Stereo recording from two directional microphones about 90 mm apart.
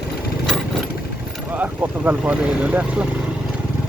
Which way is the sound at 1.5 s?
20° right (ahead or behind).